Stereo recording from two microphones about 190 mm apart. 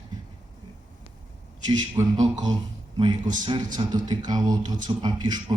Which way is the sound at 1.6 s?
20° right (ahead or behind).